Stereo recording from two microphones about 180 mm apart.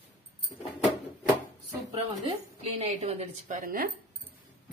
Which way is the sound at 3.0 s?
40° right (ahead or behind).